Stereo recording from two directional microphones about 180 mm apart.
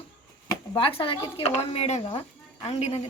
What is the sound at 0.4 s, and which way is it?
Speech, 25° left (ahead or behind).